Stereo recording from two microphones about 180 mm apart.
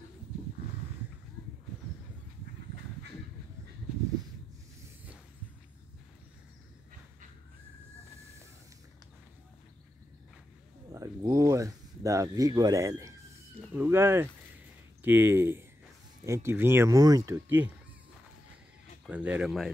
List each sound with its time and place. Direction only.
10.9 s a sound: 20° right (ahead or behind)
13.6 s speech: 10° right (ahead or behind)
19.0 s speech: 5° right (ahead or behind)